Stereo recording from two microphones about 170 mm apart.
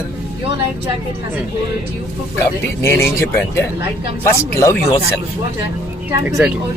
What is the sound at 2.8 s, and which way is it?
Speech, 15° left (ahead or behind).